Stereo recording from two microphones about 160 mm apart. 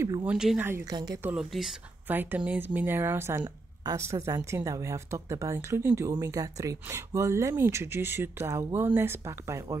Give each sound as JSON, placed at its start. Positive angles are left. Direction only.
{"t": 0.2, "sound": "speech", "side_deg": -5}
{"t": 1.2, "sound": "speech", "side_deg": -5}